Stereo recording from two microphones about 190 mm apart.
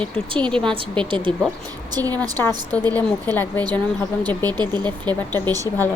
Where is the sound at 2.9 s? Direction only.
10° left (ahead or behind).